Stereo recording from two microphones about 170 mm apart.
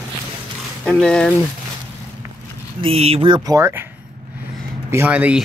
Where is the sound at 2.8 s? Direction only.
35° right (ahead or behind).